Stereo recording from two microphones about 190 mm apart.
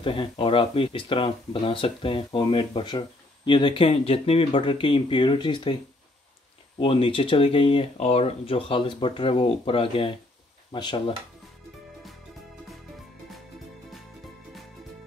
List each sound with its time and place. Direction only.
0.0 s speech: 25° left (ahead or behind)
6.8 s speech: 30° left (ahead or behind)